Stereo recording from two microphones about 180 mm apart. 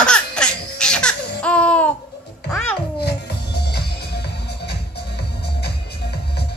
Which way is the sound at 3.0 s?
65° left (ahead or behind).